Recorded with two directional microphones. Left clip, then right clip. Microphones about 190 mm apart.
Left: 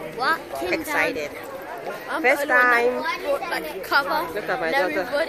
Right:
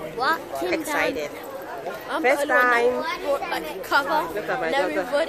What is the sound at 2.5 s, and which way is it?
Speech, centre (ahead or behind).